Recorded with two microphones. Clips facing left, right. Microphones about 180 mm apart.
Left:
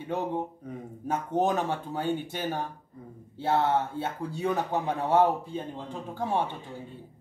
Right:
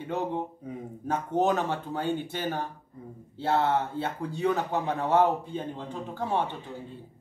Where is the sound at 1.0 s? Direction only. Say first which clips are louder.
Right 1 dB; 10° left (ahead or behind).